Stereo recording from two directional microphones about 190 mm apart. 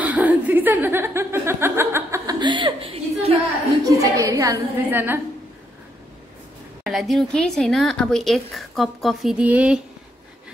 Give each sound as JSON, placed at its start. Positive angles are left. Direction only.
{"t": 0.0, "sound": "chuckle", "side_deg": -10}
{"t": 3.8, "sound": "chuckle", "side_deg": -15}
{"t": 6.8, "sound": "speech", "side_deg": 0}